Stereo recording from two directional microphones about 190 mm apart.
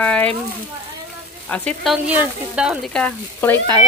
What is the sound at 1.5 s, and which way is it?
Speech, 5° left (ahead or behind).